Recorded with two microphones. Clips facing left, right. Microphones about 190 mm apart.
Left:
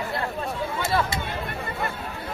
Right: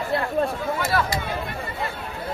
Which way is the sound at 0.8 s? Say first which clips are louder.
Even; 25° left (ahead or behind).